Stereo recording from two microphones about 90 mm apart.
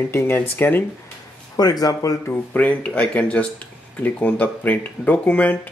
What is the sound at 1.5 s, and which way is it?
Speech, 45° left (ahead or behind).